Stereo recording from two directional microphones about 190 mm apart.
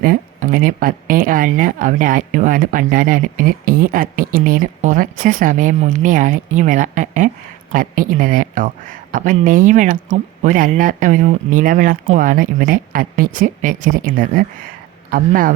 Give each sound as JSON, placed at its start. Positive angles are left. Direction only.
{"t": 0.0, "sound": "speech", "side_deg": -50}